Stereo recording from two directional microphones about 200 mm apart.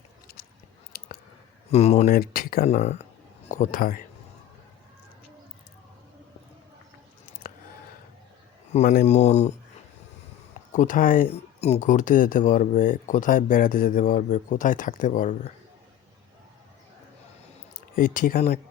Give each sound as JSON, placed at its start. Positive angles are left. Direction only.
{"t": 0.9, "sound": "a sound", "side_deg": 50}
{"t": 1.7, "sound": "speech", "side_deg": 30}
{"t": 2.1, "sound": "speech", "side_deg": 45}
{"t": 2.6, "sound": "speech", "side_deg": 35}
{"t": 8.7, "sound": "speech", "side_deg": 35}
{"t": 10.7, "sound": "speech", "side_deg": 40}
{"t": 17.7, "sound": "speech", "side_deg": 45}